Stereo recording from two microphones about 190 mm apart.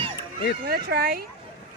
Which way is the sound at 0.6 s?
60° right (ahead or behind).